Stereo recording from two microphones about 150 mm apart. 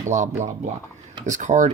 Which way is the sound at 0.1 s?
50° right (ahead or behind).